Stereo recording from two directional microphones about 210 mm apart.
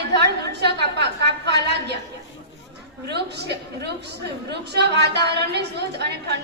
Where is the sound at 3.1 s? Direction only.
50° right (ahead or behind).